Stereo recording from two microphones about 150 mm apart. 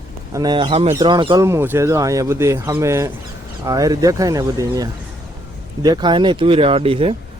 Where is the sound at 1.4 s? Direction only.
15° right (ahead or behind).